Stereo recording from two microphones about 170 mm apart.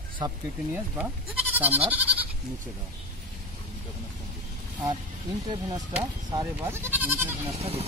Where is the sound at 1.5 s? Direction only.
10° right (ahead or behind).